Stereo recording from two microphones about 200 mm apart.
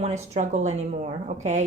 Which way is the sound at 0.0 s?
35° right (ahead or behind).